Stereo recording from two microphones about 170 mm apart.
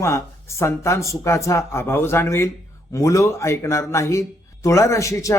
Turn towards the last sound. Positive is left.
turn(degrees=20)  # may be behind; listen again after turning